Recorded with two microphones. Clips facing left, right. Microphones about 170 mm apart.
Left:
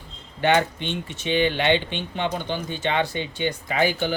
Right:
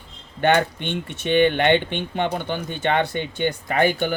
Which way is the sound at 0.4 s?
55° right (ahead or behind).